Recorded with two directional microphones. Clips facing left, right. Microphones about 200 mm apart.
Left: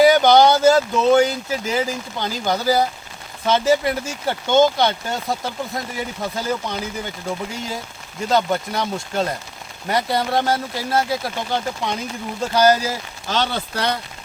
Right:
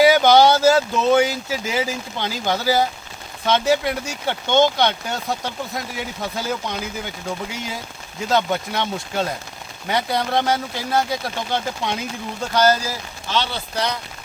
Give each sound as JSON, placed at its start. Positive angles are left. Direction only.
{"t": 0.0, "sound": "a sound", "side_deg": -5}
{"t": 1.1, "sound": "speech", "side_deg": -5}
{"t": 12.4, "sound": "speech", "side_deg": 10}
{"t": 13.3, "sound": "speech", "side_deg": 50}